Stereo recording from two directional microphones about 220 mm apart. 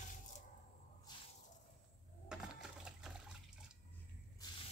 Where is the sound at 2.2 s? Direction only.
5° right (ahead or behind).